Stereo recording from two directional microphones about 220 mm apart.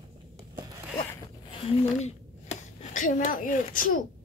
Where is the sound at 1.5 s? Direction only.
30° left (ahead or behind).